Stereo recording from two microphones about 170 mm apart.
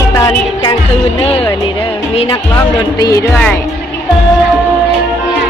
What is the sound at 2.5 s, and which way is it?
Speech, 20° left (ahead or behind).